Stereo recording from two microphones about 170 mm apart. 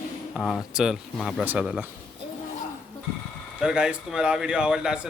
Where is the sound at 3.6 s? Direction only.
5° right (ahead or behind).